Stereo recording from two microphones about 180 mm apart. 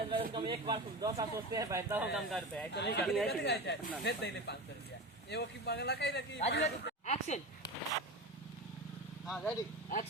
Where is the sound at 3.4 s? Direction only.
65° left (ahead or behind).